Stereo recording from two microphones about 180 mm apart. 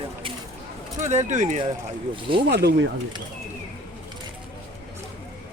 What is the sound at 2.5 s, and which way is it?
Speech, 70° right (ahead or behind).